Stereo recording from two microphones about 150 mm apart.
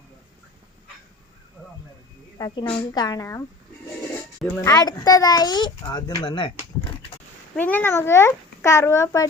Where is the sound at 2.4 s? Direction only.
30° left (ahead or behind).